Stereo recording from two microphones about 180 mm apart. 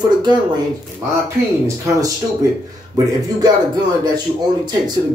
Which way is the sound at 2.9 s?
20° right (ahead or behind).